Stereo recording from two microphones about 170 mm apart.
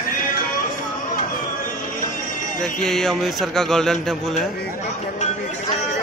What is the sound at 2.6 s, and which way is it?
Speech, 5° left (ahead or behind).